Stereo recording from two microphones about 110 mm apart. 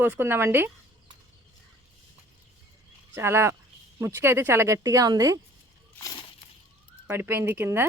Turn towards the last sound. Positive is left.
turn(degrees=-20)  # may be behind; listen again after turning